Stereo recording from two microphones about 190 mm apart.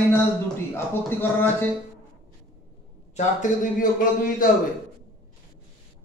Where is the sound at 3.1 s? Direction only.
45° left (ahead or behind).